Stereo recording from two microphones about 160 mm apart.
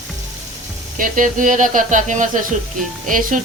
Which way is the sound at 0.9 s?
55° right (ahead or behind).